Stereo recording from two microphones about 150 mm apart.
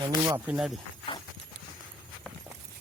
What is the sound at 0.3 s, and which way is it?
Speech, 10° right (ahead or behind).